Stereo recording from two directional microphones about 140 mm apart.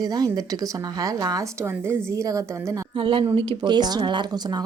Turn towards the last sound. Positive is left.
turn(degrees=-30)  # may be behind; listen again after turning